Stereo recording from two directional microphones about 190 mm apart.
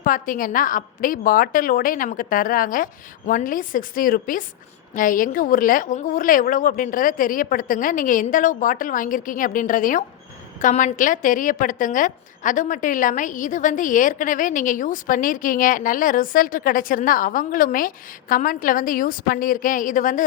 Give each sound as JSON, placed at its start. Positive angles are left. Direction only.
{"t": 0.0, "sound": "a woman's voice", "side_deg": 45}